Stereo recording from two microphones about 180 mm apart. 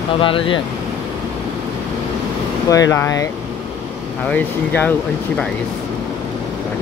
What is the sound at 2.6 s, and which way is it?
Speech, 20° left (ahead or behind).